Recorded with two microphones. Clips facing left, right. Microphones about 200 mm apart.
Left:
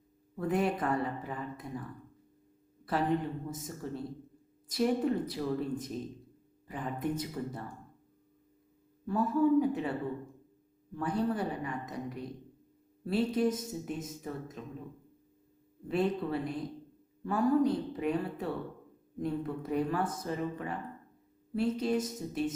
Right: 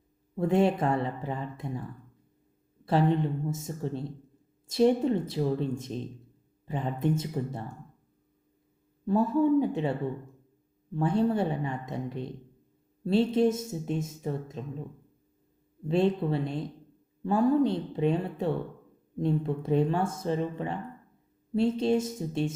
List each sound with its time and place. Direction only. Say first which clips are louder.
0.3 s speech: right 6 dB; 25° right (ahead or behind)
2.8 s speech: right 5 dB; 25° right (ahead or behind)
9.0 s speech: right 3 dB; 25° right (ahead or behind)
10.9 s speech: right 6 dB; 25° right (ahead or behind)
15.9 s speech: right 5 dB; 25° right (ahead or behind)